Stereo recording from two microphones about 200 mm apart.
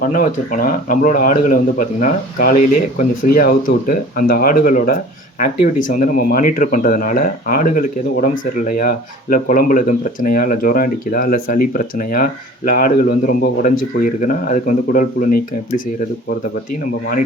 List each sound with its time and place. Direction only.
0.1 s speech: 45° left (ahead or behind)